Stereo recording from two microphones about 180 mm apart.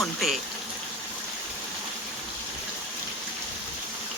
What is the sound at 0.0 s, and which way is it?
Speech, centre (ahead or behind).